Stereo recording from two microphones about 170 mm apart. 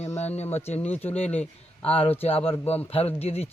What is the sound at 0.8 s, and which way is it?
Speech, 10° left (ahead or behind).